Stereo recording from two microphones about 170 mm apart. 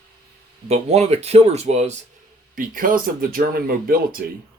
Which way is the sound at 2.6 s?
55° right (ahead or behind).